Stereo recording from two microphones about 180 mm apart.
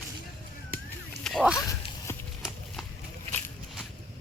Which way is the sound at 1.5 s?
15° left (ahead or behind).